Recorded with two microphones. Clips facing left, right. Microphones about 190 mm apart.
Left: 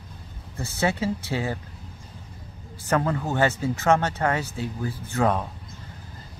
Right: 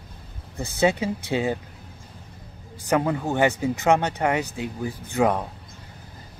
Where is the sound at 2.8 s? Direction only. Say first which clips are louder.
Right 2 dB; 15° right (ahead or behind).